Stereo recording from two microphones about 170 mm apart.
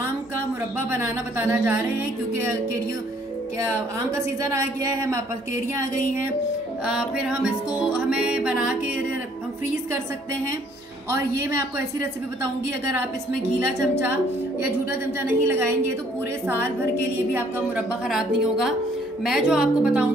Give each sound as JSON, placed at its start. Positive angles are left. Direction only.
{"t": 0.7, "sound": "speech", "side_deg": -15}
{"t": 4.6, "sound": "speech", "side_deg": -20}
{"t": 6.9, "sound": "music", "side_deg": -5}
{"t": 15.1, "sound": "speech", "side_deg": -15}
{"t": 17.3, "sound": "music", "side_deg": -5}